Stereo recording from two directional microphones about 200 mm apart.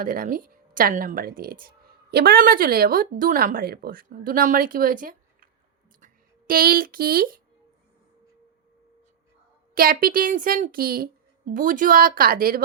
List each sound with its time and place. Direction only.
0.0 s a woman's voice: 45° right (ahead or behind)
6.5 s a woman's voice: 45° right (ahead or behind)
9.7 s a woman's voice: 45° right (ahead or behind)